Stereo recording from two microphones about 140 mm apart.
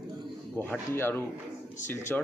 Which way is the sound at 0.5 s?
10° left (ahead or behind).